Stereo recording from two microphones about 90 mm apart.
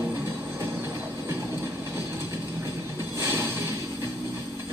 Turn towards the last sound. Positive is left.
turn(degrees=-25)  # may be behind; listen again after turning